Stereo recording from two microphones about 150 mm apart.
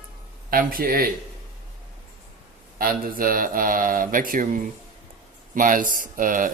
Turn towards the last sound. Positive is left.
turn(degrees=-65)  # may be behind; listen again after turning